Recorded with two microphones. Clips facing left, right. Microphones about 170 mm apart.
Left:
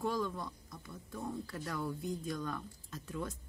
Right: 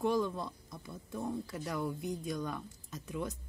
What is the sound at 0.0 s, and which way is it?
Speech, 20° right (ahead or behind).